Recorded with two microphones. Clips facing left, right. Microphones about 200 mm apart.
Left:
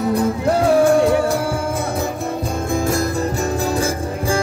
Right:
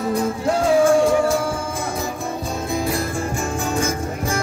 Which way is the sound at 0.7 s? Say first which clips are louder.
Left 1 dB; 60° left (ahead or behind).